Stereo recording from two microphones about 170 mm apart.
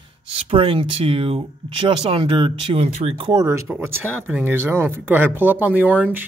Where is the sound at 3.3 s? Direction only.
15° right (ahead or behind).